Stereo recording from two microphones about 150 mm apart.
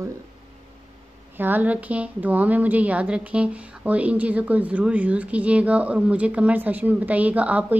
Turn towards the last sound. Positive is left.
turn(degrees=-10)  # may be behind; listen again after turning